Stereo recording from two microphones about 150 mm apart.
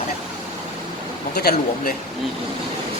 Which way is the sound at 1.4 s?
90° left.